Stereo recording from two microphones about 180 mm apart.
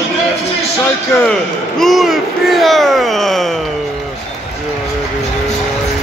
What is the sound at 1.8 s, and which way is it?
Speech, centre (ahead or behind).